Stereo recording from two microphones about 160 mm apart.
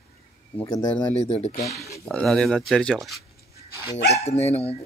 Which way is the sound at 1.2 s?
40° left (ahead or behind).